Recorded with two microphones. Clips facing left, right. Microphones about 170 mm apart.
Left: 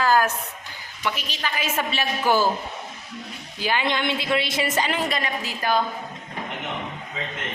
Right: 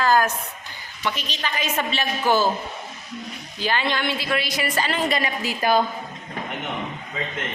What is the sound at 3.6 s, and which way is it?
A woman's voice, 15° left (ahead or behind).